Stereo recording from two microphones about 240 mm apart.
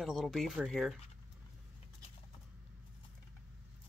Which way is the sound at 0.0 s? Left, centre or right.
Centre.